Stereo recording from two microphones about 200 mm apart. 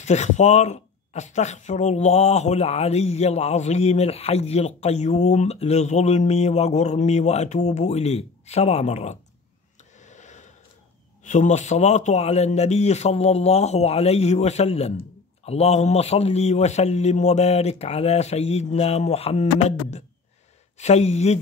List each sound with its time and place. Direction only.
0.0 s speech: 35° left (ahead or behind)
9.9 s a sound: 35° left (ahead or behind)
11.2 s speech: 35° left (ahead or behind)
20.7 s speech: 35° left (ahead or behind)